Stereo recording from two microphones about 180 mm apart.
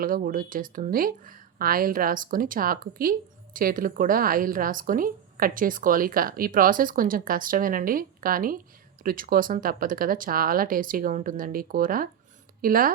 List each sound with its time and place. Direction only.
0.0 s a woman's voice: 50° right (ahead or behind)